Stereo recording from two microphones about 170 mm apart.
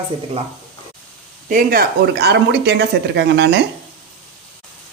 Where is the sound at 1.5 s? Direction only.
55° right (ahead or behind); by 3.6 s 80° right.